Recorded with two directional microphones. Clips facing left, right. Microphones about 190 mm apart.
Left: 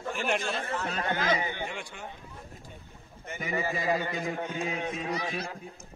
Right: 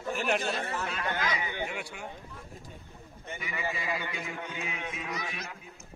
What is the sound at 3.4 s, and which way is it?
A man's voice, 40° left (ahead or behind).